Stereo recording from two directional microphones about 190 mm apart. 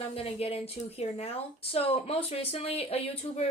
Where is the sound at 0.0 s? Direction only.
30° left (ahead or behind).